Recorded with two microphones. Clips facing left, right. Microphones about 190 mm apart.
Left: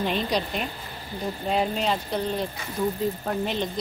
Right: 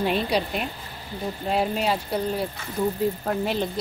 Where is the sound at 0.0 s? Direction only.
5° right (ahead or behind).